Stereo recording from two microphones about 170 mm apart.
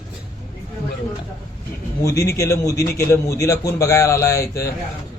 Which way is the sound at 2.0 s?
20° left (ahead or behind).